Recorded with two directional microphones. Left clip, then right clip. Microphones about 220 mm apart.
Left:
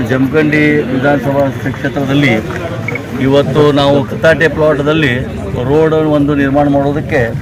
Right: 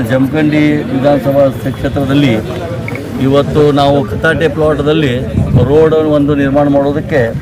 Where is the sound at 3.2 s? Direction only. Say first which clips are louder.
Even; 10° right (ahead or behind).